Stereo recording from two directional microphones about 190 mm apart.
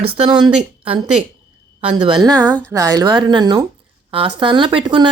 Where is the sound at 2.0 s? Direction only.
20° right (ahead or behind).